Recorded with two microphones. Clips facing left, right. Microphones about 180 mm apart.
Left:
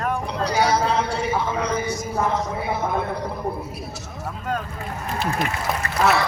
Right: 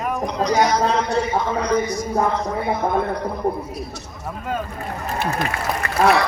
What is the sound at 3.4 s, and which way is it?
Speech, 25° right (ahead or behind).